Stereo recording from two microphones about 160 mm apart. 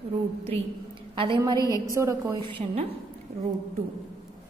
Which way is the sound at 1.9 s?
20° right (ahead or behind).